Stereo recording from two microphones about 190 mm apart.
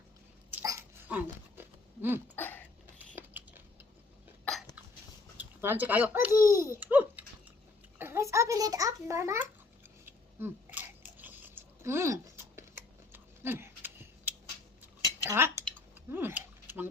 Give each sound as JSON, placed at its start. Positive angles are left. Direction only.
{"t": 0.5, "sound": "dog", "side_deg": -15}
{"t": 2.3, "sound": "a sound", "side_deg": 10}
{"t": 5.4, "sound": "speech", "side_deg": -10}
{"t": 6.3, "sound": "a child's voice", "side_deg": 15}
{"t": 6.6, "sound": "a child's voice", "side_deg": -10}
{"t": 10.1, "sound": "chewing", "side_deg": -10}
{"t": 15.2, "sound": "cutlery", "side_deg": -15}
{"t": 16.1, "sound": "a sound", "side_deg": -10}